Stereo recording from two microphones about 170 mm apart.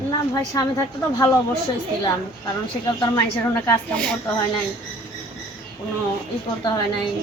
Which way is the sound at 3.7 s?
5° left (ahead or behind).